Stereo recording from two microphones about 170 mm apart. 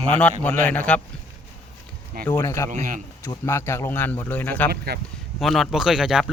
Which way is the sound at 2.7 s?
50° right (ahead or behind).